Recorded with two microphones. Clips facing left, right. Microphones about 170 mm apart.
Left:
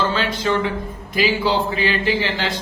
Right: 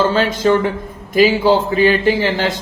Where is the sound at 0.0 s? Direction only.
45° right (ahead or behind).